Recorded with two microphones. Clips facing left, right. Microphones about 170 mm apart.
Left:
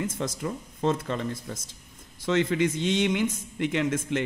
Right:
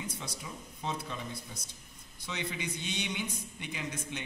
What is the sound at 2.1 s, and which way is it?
A man's voice, 90° left.